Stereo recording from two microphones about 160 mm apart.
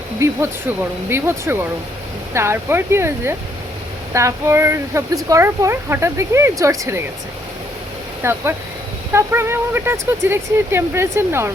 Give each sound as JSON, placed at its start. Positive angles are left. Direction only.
{"t": 0.2, "sound": "speech", "side_deg": -15}
{"t": 8.2, "sound": "speech", "side_deg": -15}